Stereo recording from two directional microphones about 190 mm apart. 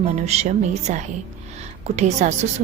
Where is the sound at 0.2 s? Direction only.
35° right (ahead or behind).